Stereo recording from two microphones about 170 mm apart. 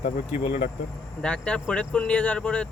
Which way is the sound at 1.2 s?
5° left (ahead or behind).